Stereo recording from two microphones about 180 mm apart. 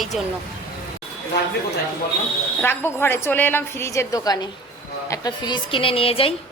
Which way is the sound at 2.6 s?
10° left (ahead or behind).